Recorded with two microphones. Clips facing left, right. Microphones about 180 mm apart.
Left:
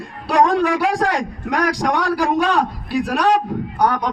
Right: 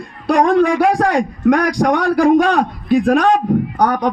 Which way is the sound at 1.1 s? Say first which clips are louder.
Right 8 dB; 55° right (ahead or behind).